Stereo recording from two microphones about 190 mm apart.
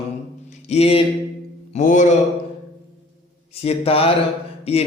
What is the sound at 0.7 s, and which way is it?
Speech, 30° left (ahead or behind).